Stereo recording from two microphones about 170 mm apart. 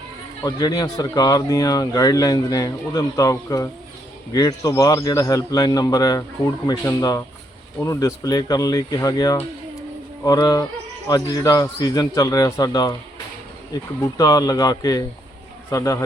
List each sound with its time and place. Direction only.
0.4 s speech: 20° left (ahead or behind)
14.0 s a man's voice: 20° left (ahead or behind)